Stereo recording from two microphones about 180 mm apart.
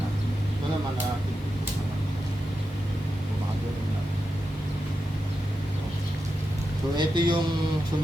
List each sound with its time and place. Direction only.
6.9 s a man's voice: 25° right (ahead or behind)